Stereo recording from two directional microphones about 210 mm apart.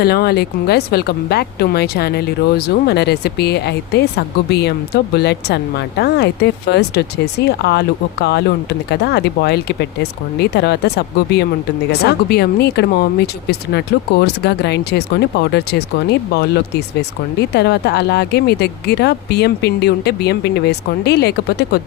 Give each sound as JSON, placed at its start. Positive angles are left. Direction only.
{"t": 0.0, "sound": "speech", "side_deg": 50}